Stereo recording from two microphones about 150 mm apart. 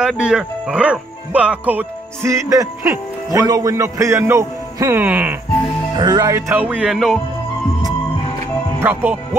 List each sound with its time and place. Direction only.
0.0 s a man's voice: 5° right (ahead or behind)
5.9 s speech: 25° right (ahead or behind); by 7.2 s centre (ahead or behind)
8.8 s speech: 15° right (ahead or behind)